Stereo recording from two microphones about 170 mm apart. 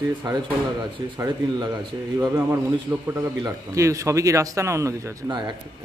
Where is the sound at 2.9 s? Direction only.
20° right (ahead or behind).